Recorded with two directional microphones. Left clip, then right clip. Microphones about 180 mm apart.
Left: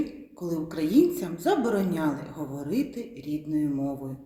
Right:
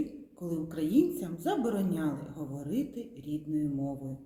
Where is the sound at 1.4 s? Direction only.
Centre (ahead or behind).